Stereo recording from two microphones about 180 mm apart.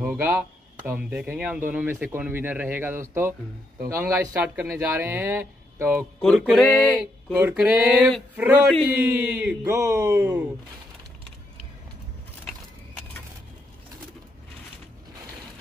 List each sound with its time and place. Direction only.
0.0 s speech: 10° right (ahead or behind)
6.2 s speech: centre (ahead or behind)